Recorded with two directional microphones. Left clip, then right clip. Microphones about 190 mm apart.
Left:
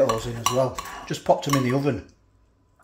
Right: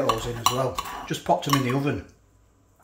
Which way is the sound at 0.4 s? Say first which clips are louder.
Left 1 dB; 5° right (ahead or behind).